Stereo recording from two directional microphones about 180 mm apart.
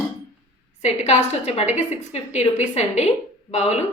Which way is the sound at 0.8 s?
40° left (ahead or behind).